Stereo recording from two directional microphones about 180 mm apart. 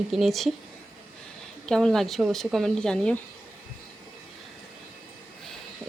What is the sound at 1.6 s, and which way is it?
Speech, 5° left (ahead or behind).